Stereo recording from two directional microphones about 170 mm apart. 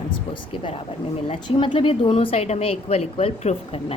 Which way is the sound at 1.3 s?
30° left (ahead or behind).